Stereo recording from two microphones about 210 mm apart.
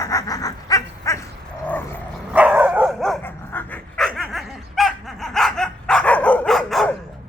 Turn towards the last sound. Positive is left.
turn(degrees=0)  # may be behind; listen again after turning